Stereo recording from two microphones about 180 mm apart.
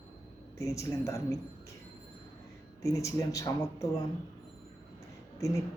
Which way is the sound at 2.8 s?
15° left (ahead or behind).